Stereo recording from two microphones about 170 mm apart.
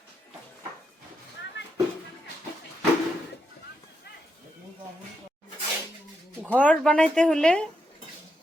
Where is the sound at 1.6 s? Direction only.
90° left.